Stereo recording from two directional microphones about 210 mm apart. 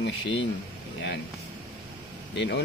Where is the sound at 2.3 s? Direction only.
55° left (ahead or behind).